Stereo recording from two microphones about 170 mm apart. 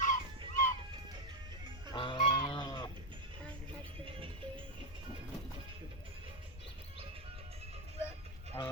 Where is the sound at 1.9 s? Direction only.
30° left (ahead or behind).